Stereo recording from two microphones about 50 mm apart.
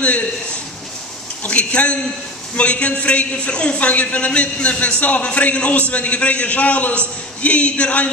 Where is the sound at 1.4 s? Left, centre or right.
Left.